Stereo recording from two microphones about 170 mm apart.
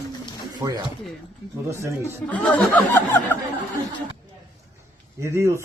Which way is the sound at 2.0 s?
10° left (ahead or behind).